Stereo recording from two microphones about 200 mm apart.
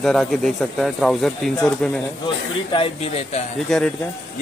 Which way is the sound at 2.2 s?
25° left (ahead or behind).